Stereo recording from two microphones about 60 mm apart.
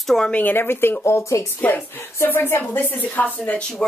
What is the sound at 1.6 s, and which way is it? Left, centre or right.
A woman's voice, left.